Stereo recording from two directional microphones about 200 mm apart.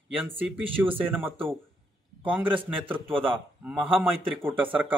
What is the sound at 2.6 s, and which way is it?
A man's voice, 10° right (ahead or behind).